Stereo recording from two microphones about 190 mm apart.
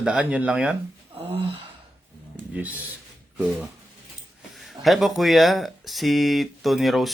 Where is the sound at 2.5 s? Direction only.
10° right (ahead or behind).